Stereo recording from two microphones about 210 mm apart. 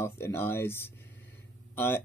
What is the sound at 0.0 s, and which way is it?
Speech, 10° left (ahead or behind).